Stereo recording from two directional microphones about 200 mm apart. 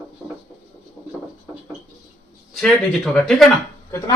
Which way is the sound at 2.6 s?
5° left (ahead or behind).